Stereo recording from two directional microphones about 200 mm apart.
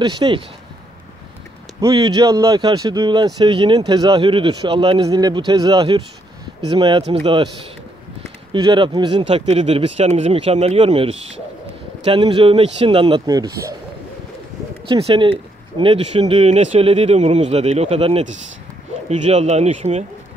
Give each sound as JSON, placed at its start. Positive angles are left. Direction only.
{"t": 0.0, "sound": "speech", "side_deg": -25}
{"t": 1.8, "sound": "speech", "side_deg": -20}
{"t": 8.5, "sound": "speech", "side_deg": -25}
{"t": 14.9, "sound": "speech", "side_deg": -25}